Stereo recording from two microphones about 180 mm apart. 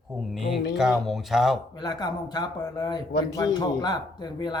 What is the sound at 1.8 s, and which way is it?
Speech, 25° left (ahead or behind).